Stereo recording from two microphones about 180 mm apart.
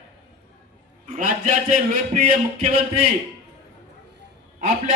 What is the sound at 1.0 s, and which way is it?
Speech, 50° right (ahead or behind).